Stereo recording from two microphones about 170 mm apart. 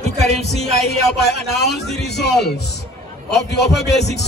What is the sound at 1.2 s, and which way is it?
Speech, 75° left (ahead or behind).